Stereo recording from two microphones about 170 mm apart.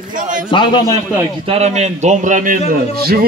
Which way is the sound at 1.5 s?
40° right (ahead or behind).